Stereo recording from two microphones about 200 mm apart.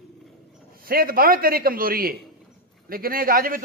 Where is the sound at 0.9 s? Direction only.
45° right (ahead or behind).